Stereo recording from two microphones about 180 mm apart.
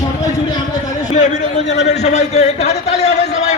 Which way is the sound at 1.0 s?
40° left (ahead or behind).